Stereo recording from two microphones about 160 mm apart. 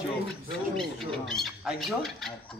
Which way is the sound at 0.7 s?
Centre (ahead or behind).